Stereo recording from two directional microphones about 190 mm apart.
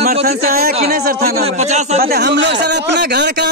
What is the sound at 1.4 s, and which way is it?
Speech, 35° right (ahead or behind).